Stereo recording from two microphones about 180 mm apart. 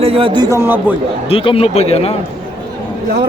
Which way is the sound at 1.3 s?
30° left (ahead or behind).